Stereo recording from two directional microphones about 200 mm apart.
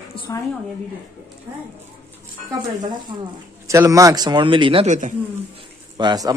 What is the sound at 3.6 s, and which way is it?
A man's voice, 15° right (ahead or behind).